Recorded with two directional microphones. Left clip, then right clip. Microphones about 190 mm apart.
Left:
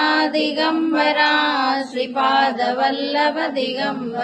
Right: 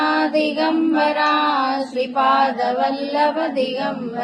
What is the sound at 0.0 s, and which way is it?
Child singing, 15° left (ahead or behind).